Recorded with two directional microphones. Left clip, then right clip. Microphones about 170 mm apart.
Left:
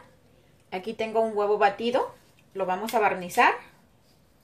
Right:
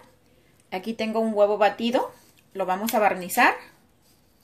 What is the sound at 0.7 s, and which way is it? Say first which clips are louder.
A woman's voice: right 1 dB; 60° right (ahead or behind).